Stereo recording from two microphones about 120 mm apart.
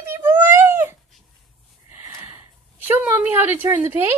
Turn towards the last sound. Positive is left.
turn(degrees=-15)  # may be behind; listen again after turning